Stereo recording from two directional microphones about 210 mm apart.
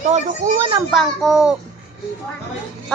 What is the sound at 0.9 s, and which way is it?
Speech, centre (ahead or behind).